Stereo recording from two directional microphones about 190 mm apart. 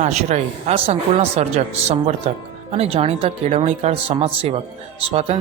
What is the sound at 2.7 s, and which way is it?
Speech, 35° right (ahead or behind).